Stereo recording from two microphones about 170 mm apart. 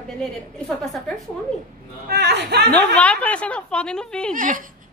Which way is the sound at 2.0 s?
80° right.